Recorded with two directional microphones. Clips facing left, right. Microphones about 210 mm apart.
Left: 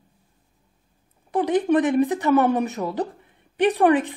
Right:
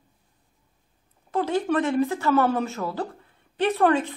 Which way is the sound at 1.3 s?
15° left (ahead or behind).